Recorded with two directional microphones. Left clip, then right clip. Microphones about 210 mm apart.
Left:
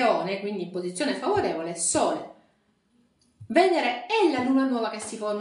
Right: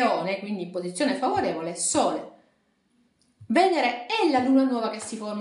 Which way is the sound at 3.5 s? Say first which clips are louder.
Even; 35° right (ahead or behind).